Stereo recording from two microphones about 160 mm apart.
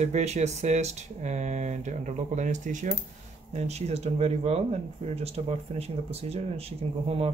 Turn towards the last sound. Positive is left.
turn(degrees=-40)  # may be behind; listen again after turning